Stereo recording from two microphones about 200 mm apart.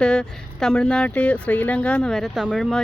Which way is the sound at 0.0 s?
5° left (ahead or behind).